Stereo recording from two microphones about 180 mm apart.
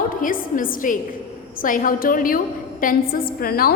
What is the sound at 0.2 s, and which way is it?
A woman's voice, 50° left (ahead or behind).